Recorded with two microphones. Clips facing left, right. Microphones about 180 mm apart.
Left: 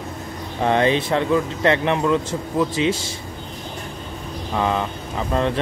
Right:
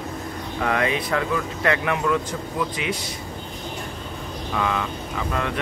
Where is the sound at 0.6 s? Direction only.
30° left (ahead or behind).